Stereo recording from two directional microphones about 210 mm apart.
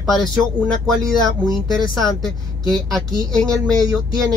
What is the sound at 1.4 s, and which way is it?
Speech, centre (ahead or behind).